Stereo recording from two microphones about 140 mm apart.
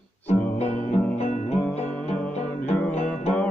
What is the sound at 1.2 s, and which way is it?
Music, 55° left (ahead or behind).